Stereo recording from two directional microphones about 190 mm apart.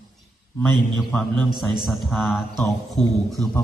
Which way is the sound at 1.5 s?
25° right (ahead or behind).